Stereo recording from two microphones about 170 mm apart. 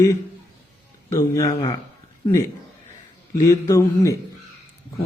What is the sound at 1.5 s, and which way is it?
Speech, 30° left (ahead or behind).